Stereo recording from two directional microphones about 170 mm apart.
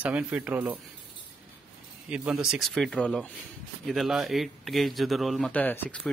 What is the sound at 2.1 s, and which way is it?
Speech, 5° right (ahead or behind).